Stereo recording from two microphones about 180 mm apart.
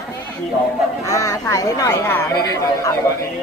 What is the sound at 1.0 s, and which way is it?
Speech, 20° left (ahead or behind).